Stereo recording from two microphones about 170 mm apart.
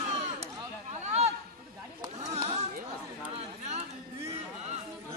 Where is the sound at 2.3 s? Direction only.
40° right (ahead or behind).